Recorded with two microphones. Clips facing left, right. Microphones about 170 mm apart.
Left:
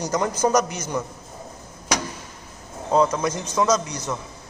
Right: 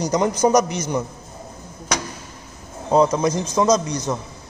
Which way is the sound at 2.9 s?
15° right (ahead or behind).